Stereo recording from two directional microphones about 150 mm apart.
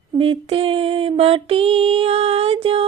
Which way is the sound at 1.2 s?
40° right (ahead or behind).